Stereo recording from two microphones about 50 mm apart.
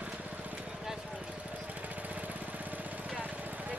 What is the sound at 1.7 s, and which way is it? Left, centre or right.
Lawn mower, right.